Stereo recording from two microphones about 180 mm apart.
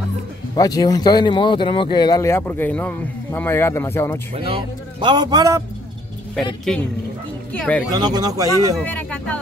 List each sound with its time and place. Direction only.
0.6 s speech: 20° left (ahead or behind)
4.4 s speech: 30° right (ahead or behind)
6.7 s speech: 5° left (ahead or behind)
7.9 s speech: 20° right (ahead or behind)
8.7 s speech: 10° left (ahead or behind)